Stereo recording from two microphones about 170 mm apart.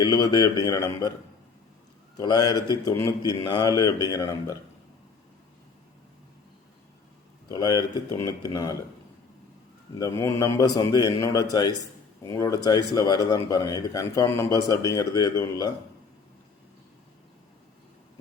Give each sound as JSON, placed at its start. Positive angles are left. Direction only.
{"t": 0.0, "sound": "speech", "side_deg": 25}
{"t": 2.1, "sound": "speech", "side_deg": 20}
{"t": 7.4, "sound": "speech", "side_deg": 20}
{"t": 10.0, "sound": "speech", "side_deg": 20}